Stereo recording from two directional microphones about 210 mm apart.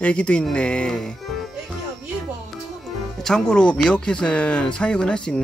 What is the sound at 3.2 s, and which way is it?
Speech, 5° left (ahead or behind).